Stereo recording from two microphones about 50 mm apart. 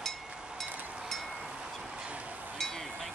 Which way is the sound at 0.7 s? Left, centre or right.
Right.